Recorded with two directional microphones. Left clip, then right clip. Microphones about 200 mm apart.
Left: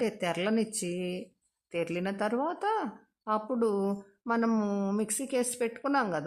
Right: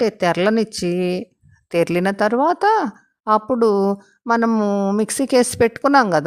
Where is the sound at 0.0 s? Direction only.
40° right (ahead or behind).